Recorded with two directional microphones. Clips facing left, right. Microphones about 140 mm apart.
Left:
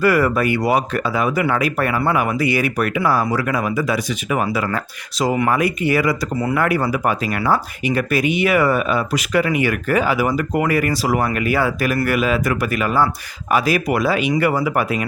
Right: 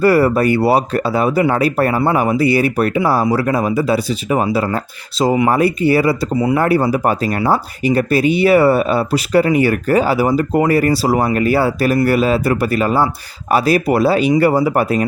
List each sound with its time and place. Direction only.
0.0 s speech: 30° right (ahead or behind)